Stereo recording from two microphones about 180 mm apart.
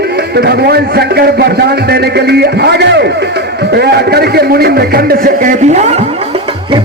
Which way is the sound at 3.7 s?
65° right (ahead or behind).